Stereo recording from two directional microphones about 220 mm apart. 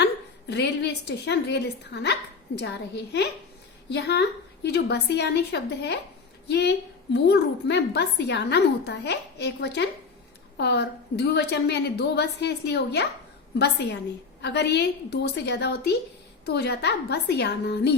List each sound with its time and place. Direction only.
0.0 s a woman's voice: 50° left (ahead or behind)
14.4 s a woman's voice: 50° left (ahead or behind)